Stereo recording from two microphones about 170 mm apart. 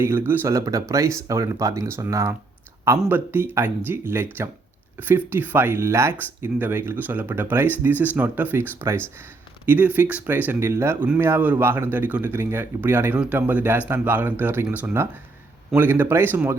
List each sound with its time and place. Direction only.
0.0 s speech: 15° right (ahead or behind)